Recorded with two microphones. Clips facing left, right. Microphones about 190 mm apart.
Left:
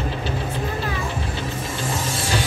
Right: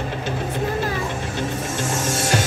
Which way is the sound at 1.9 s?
45° right (ahead or behind).